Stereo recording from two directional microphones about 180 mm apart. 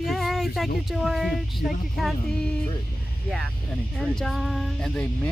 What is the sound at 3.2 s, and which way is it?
Speech, 5° right (ahead or behind).